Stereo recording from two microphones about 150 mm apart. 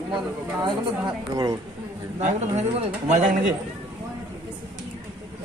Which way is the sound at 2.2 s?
50° right (ahead or behind).